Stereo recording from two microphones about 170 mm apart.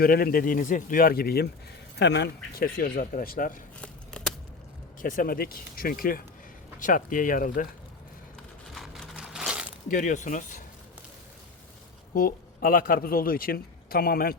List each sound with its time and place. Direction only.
0.0 s a man's voice: 60° left (ahead or behind)
2.0 s a man's voice: 90° left; by 3.6 s 55° left (ahead or behind)
4.1 s a sound: 5° left (ahead or behind)
5.0 s a man's voice: 55° left (ahead or behind)
8.7 s a sound: centre (ahead or behind)
9.9 s speech: 50° left (ahead or behind)
12.1 s a man's voice: 55° left (ahead or behind)